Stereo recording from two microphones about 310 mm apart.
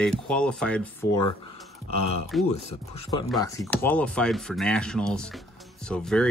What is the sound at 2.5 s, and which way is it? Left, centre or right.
Speech, centre.